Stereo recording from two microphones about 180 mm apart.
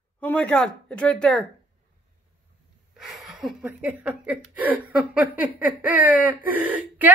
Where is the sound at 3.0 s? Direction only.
Centre (ahead or behind).